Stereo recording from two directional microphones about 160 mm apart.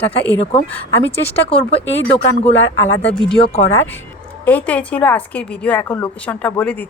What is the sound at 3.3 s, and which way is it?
Speech, 35° left (ahead or behind).